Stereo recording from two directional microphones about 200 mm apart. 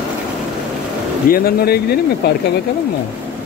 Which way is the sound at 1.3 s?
50° left (ahead or behind).